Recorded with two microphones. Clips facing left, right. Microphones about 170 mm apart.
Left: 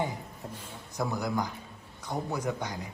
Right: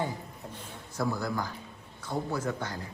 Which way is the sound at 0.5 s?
20° left (ahead or behind).